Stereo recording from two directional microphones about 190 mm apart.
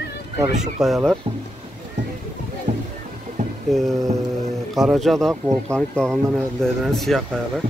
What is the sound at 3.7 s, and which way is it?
Speech, centre (ahead or behind).